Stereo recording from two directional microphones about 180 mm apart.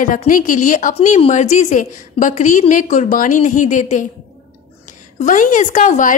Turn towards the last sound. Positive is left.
turn(degrees=45)  # may be behind; listen again after turning